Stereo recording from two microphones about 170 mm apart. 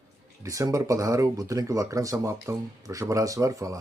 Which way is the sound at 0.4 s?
20° right (ahead or behind).